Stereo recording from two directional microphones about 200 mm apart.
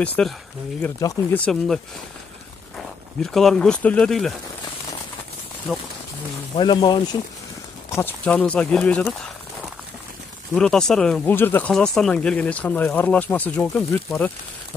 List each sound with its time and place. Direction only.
0.0 s speech: 5° left (ahead or behind)
3.2 s speech: centre (ahead or behind)
5.7 s speech: centre (ahead or behind)
6.5 s speech: 25° left (ahead or behind)
7.9 s speech: 10° left (ahead or behind)
10.5 s speech: 5° left (ahead or behind)